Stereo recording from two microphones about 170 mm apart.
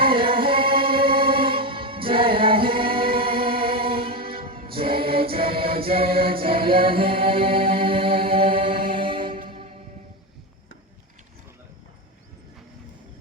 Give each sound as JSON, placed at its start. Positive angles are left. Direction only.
{"t": 0.0, "sound": "music", "side_deg": -30}
{"t": 9.3, "sound": "music", "side_deg": -55}